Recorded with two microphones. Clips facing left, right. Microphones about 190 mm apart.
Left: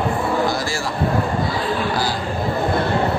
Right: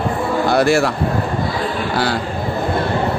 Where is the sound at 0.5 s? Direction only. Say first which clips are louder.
Right 10 dB; 65° right (ahead or behind).